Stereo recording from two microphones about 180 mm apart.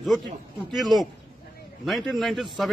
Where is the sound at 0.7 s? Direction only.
Centre (ahead or behind).